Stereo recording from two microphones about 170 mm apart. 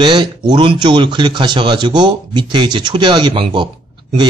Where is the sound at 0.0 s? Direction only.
25° right (ahead or behind).